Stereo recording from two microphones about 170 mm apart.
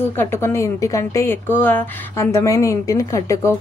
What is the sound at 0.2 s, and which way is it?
Speech, 15° left (ahead or behind).